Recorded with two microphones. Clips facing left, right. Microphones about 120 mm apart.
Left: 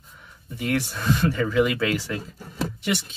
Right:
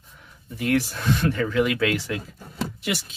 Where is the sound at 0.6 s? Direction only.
Centre (ahead or behind).